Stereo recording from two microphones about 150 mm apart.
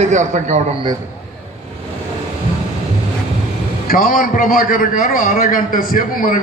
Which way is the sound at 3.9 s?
70° left (ahead or behind).